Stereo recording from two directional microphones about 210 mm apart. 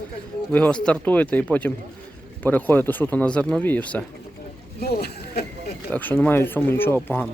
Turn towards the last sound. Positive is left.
turn(degrees=10)  # may be behind; listen again after turning